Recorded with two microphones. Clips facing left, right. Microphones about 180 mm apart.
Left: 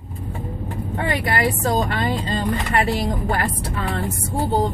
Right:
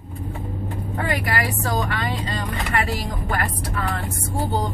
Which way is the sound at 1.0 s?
30° left (ahead or behind).